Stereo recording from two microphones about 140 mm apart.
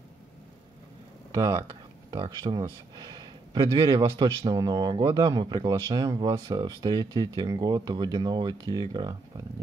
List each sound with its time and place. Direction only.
1.3 s speech: 25° right (ahead or behind)